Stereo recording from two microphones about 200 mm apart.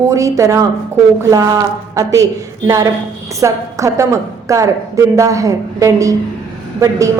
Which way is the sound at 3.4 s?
15° right (ahead or behind).